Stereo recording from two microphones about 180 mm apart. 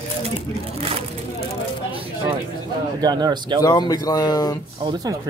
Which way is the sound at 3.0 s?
20° right (ahead or behind).